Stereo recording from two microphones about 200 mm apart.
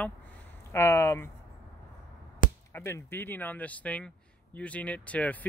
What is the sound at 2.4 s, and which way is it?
Chop, 40° left (ahead or behind).